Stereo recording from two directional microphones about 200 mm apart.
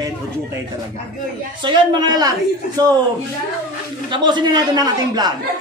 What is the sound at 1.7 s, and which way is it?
Speech, 20° right (ahead or behind).